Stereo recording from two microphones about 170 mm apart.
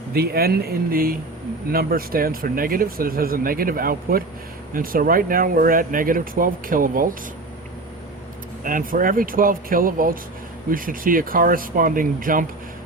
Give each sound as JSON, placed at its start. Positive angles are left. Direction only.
{"t": 0.1, "sound": "speech", "side_deg": -65}
{"t": 8.6, "sound": "speech", "side_deg": -55}